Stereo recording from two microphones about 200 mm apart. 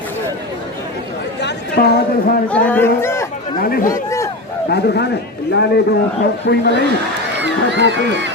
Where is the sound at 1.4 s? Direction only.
55° left (ahead or behind).